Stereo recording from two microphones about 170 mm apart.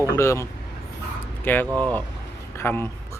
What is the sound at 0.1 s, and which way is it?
Speech, 15° left (ahead or behind).